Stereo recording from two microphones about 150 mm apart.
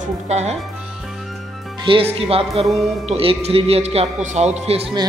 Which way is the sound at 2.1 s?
40° right (ahead or behind).